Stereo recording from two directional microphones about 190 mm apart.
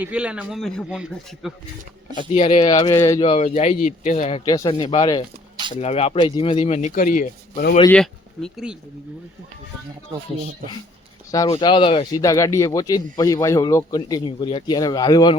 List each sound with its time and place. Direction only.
0.0 s speech: 5° right (ahead or behind)
2.1 s speech: 35° left (ahead or behind)
2.6 s speech: 25° left (ahead or behind)
3.4 s speech: 35° left (ahead or behind)
7.9 s speech: 5° left (ahead or behind)
11.3 s speech: 20° left (ahead or behind)
12.2 s speech: 15° left (ahead or behind)